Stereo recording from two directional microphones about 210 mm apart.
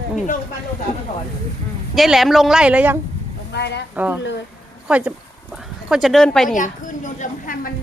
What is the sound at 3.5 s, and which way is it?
Speech, 55° left (ahead or behind).